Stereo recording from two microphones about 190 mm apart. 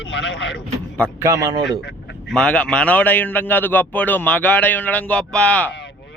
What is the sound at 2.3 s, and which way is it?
A man's voice, 5° left (ahead or behind).